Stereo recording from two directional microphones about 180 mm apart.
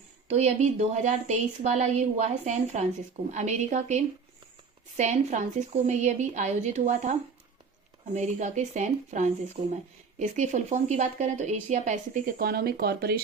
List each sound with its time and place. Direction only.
0.3 s speech: 40° right (ahead or behind); by 13.2 s 60° right (ahead or behind)